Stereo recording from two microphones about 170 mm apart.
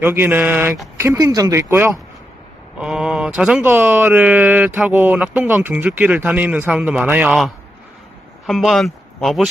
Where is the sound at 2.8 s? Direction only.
5° right (ahead or behind).